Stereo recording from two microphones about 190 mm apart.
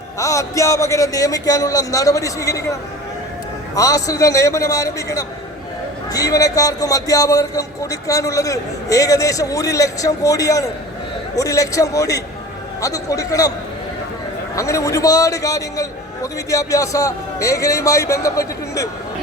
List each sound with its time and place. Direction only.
0.2 s a man's voice: 15° left (ahead or behind)
3.8 s a man's voice: 15° left (ahead or behind)
14.5 s a man's voice: 15° left (ahead or behind)